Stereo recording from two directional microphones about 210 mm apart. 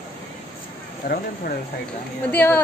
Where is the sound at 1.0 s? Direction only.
50° left (ahead or behind).